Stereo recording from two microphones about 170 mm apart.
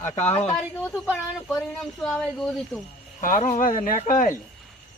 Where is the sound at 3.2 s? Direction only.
50° left (ahead or behind).